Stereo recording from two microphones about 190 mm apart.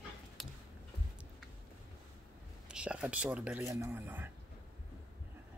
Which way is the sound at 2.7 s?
5° right (ahead or behind).